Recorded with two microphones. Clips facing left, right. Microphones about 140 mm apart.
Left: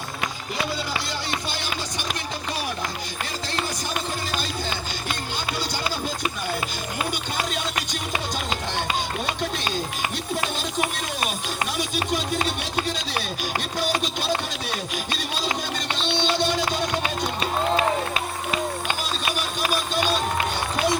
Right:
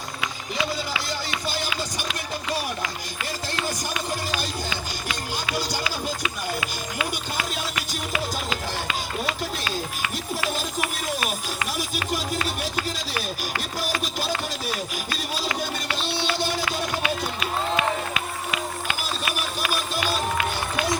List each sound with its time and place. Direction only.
0.2 s run: 50° left (ahead or behind)
3.5 s music: 50° left (ahead or behind)
5.8 s speech: 45° left (ahead or behind)
14.0 s speech: 5° right (ahead or behind)
16.0 s speech: 5° right (ahead or behind)
17.0 s run: 35° left (ahead or behind)